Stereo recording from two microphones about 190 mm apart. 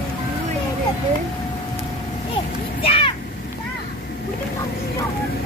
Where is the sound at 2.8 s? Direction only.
30° left (ahead or behind).